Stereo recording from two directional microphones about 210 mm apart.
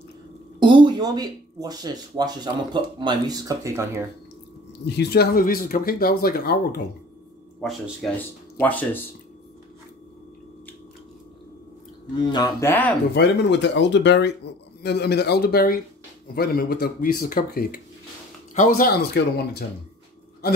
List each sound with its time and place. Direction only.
0.6 s speech: 20° right (ahead or behind)
4.8 s speech: 50° left (ahead or behind)
7.6 s speech: centre (ahead or behind)
12.2 s mantra: 20° left (ahead or behind)
12.4 s speech: 10° left (ahead or behind)
13.1 s speech: 55° left (ahead or behind)